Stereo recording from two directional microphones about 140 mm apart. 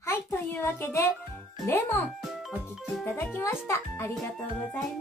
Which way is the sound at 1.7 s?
20° left (ahead or behind).